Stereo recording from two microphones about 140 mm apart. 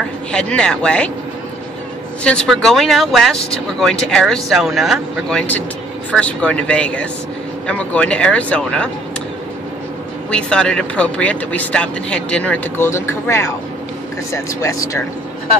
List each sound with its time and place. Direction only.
0.3 s speech: 5° left (ahead or behind)
2.2 s speech: 5° left (ahead or behind)
10.3 s speech: 5° left (ahead or behind); by 15.0 s 25° left (ahead or behind)